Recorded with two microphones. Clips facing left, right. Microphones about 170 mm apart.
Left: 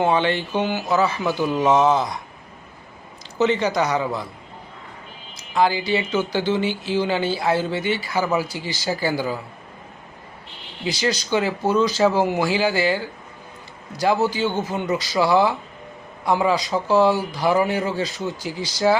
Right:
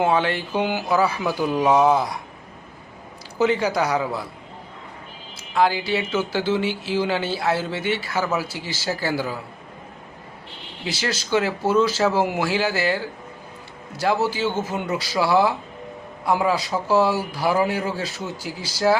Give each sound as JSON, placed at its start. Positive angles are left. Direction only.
{"t": 0.0, "sound": "speech", "side_deg": -5}
{"t": 3.3, "sound": "speech", "side_deg": -5}
{"t": 5.5, "sound": "speech", "side_deg": 0}
{"t": 10.8, "sound": "speech", "side_deg": -5}